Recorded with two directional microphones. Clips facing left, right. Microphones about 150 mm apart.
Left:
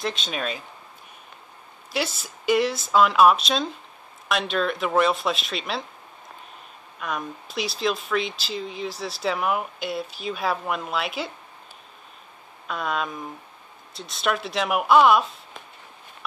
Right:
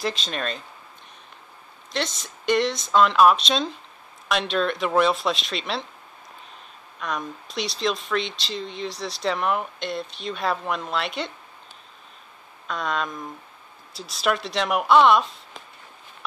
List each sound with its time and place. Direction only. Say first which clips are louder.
0.0 s speech: right 1 dB; centre (ahead or behind)
1.9 s speech: left 1 dB; 5° left (ahead or behind)
7.0 s speech: even; 5° left (ahead or behind)
12.6 s speech: even; 5° left (ahead or behind)